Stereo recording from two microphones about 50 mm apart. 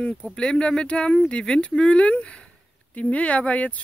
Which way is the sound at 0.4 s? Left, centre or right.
Left.